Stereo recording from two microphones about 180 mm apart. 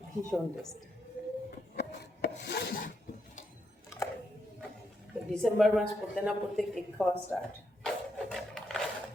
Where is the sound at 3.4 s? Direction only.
45° left (ahead or behind).